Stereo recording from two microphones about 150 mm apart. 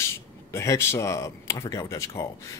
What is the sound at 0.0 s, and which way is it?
Speech, 20° left (ahead or behind).